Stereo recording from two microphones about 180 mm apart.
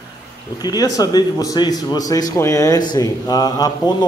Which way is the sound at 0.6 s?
20° left (ahead or behind).